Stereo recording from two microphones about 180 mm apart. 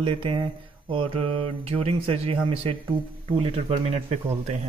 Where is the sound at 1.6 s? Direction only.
35° right (ahead or behind).